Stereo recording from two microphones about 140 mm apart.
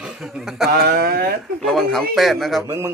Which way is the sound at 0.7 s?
90° right.